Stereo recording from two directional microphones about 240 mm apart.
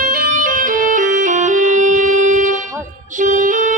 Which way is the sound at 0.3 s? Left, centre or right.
Right.